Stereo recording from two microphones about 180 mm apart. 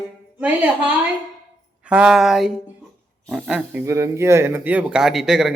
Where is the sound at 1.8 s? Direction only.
5° right (ahead or behind).